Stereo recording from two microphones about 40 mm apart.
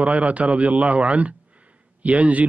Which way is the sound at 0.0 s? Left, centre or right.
Right.